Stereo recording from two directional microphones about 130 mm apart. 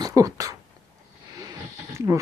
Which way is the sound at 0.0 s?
25° right (ahead or behind).